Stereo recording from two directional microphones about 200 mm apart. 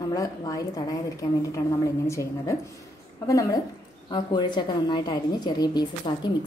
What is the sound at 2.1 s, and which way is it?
A woman's voice, 15° left (ahead or behind).